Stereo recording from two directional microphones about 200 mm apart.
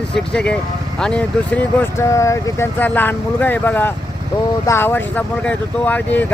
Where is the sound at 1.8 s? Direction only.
15° left (ahead or behind).